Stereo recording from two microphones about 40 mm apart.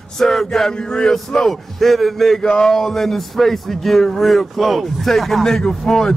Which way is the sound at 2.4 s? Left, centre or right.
Centre.